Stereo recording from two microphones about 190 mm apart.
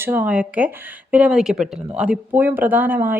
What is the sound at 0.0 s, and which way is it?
Speech, 10° right (ahead or behind).